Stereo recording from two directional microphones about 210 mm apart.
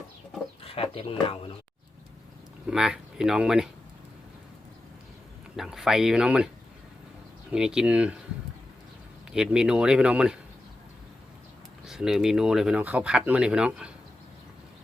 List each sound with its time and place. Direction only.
0.6 s speech: 25° left (ahead or behind)
2.6 s speech: 5° right (ahead or behind)
5.5 s speech: centre (ahead or behind)
7.5 s speech: 5° right (ahead or behind)
9.3 s speech: 5° right (ahead or behind)
11.9 s speech: centre (ahead or behind)